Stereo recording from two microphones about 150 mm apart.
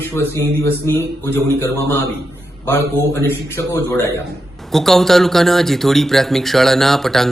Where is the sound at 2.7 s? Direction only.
15° left (ahead or behind).